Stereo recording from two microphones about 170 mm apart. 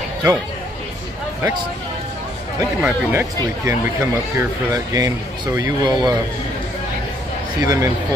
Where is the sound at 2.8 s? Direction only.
5° right (ahead or behind).